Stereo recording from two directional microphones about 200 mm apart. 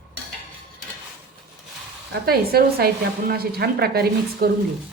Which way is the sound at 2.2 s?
50° right (ahead or behind).